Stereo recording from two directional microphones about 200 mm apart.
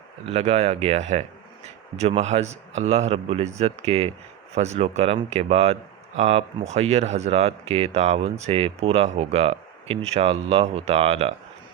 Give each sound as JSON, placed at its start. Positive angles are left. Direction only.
{"t": 0.3, "sound": "speech", "side_deg": -30}